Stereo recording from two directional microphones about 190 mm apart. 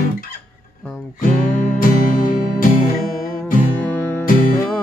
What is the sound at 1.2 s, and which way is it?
Music, 45° left (ahead or behind).